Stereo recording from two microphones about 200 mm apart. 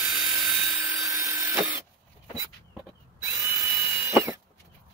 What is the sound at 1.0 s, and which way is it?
Tools, 15° right (ahead or behind).